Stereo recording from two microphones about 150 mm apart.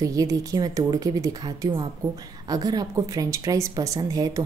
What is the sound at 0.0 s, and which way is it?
A woman's voice, 25° right (ahead or behind).